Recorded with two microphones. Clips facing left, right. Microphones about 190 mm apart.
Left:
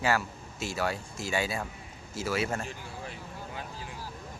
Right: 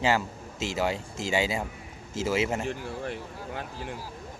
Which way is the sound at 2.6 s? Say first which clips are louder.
Right 8 dB; 65° right (ahead or behind).